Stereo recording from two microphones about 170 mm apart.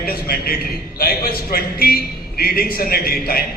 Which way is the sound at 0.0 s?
60° left (ahead or behind).